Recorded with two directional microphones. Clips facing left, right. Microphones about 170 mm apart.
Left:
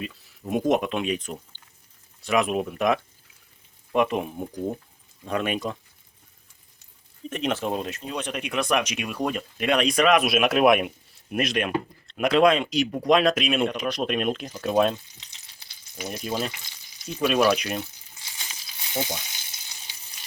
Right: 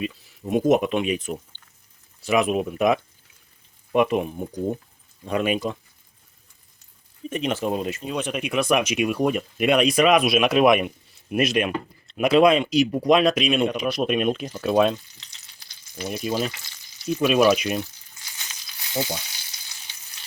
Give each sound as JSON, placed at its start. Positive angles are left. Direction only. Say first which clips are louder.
{"t": 0.0, "sound": "speech", "louder": "right 5 dB", "side_deg": 0}
{"t": 7.3, "sound": "speech", "louder": "right 2 dB", "side_deg": 0}
{"t": 13.7, "sound": "speech", "louder": "right 3 dB", "side_deg": -10}
{"t": 16.0, "sound": "speech", "louder": "right 3 dB", "side_deg": -5}
{"t": 18.2, "sound": "crumpling", "louder": "even", "side_deg": 25}
{"t": 18.9, "sound": "frying", "louder": "right 2 dB", "side_deg": 20}